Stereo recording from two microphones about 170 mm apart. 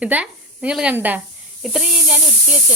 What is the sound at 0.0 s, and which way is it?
A woman's voice, 10° right (ahead or behind).